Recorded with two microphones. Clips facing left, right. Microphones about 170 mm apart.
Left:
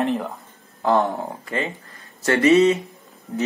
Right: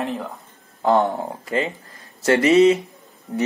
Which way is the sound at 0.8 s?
20° right (ahead or behind).